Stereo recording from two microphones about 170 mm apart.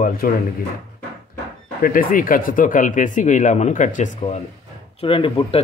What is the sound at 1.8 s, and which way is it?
Speech, 55° left (ahead or behind).